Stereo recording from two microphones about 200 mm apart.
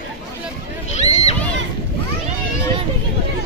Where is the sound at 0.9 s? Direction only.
35° left (ahead or behind).